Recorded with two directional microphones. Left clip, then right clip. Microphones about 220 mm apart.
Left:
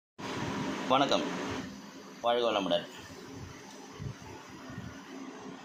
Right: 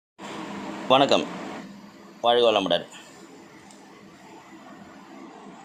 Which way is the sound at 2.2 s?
40° right (ahead or behind).